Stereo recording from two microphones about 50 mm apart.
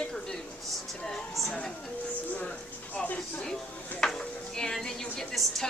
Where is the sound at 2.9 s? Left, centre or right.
Left.